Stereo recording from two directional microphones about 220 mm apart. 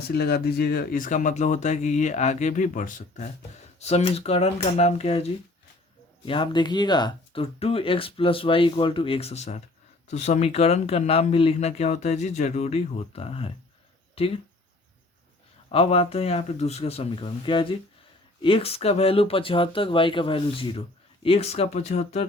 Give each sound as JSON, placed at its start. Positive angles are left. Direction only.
{"t": 0.1, "sound": "speech", "side_deg": 45}
{"t": 15.7, "sound": "speech", "side_deg": 25}